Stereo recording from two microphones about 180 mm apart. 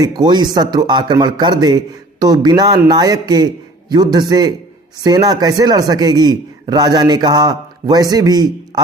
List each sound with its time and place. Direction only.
0.0 s a man's voice: 25° right (ahead or behind)